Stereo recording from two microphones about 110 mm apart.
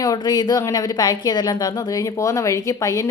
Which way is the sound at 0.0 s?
35° left (ahead or behind).